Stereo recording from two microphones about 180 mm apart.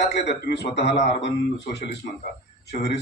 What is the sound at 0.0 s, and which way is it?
Speech, 75° left (ahead or behind).